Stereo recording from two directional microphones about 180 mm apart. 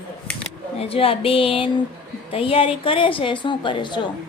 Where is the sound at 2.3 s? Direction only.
30° left (ahead or behind).